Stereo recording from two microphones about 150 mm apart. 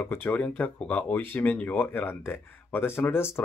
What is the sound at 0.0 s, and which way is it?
Speech, 15° left (ahead or behind).